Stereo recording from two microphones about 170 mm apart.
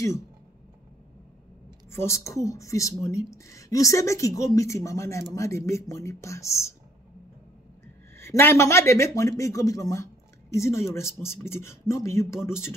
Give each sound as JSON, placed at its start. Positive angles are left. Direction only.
{"t": 1.9, "sound": "speech", "side_deg": 15}
{"t": 8.2, "sound": "speech", "side_deg": 15}